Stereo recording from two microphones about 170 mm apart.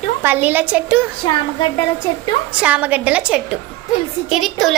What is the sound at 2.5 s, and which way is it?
A child's voice, 5° right (ahead or behind).